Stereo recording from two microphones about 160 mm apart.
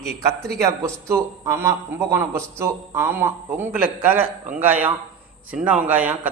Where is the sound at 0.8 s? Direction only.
15° right (ahead or behind).